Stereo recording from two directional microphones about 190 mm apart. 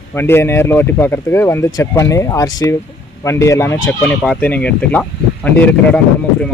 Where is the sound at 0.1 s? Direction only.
10° left (ahead or behind).